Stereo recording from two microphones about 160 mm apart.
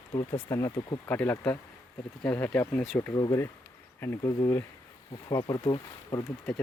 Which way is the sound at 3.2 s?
20° left (ahead or behind).